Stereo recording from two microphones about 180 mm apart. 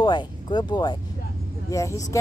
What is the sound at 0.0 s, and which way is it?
Speech, 25° left (ahead or behind).